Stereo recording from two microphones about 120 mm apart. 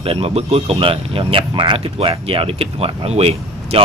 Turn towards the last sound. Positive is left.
turn(degrees=-60)  # may be behind; listen again after turning